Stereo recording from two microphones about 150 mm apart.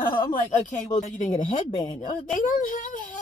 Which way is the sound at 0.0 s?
35° left (ahead or behind).